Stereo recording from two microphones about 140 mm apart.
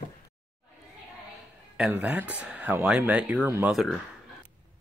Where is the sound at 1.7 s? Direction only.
5° right (ahead or behind).